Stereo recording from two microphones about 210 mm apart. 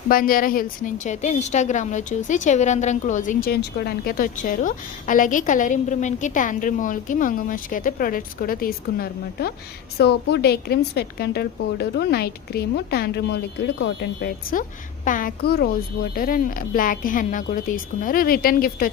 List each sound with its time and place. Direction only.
0.1 s a woman's voice: 40° left (ahead or behind)